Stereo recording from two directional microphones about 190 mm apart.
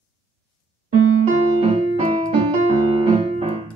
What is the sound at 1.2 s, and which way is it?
Keyboard, 35° right (ahead or behind).